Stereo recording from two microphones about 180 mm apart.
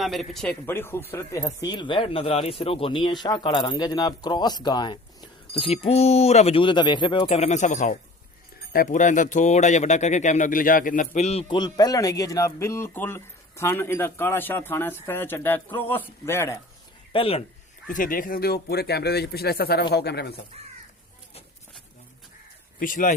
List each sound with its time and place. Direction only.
0.0 s speech: centre (ahead or behind)
17.1 s speech: 30° left (ahead or behind)
17.8 s speech: 50° left (ahead or behind); by 20.4 s 65° left (ahead or behind)
22.8 s speech: 50° left (ahead or behind)